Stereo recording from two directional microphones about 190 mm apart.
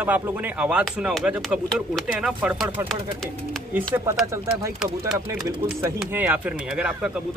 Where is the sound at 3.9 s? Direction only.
15° right (ahead or behind).